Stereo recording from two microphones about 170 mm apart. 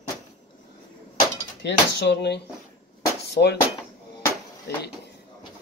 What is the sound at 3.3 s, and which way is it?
Speech, 75° left (ahead or behind).